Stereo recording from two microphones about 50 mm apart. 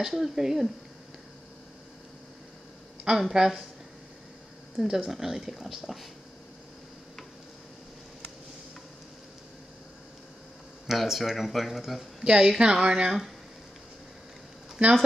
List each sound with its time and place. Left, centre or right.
0.0 s speech: centre
3.2 s speech: centre
4.7 s speech: centre
10.9 s speech: centre
12.2 s speech: centre
14.8 s speech: right